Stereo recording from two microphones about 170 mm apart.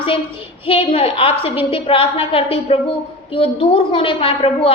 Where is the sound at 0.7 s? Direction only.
35° left (ahead or behind).